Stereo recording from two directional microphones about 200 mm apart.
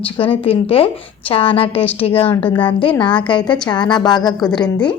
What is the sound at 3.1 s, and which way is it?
Speech, 25° left (ahead or behind).